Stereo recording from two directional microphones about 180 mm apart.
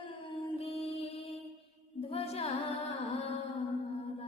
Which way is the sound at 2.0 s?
35° left (ahead or behind).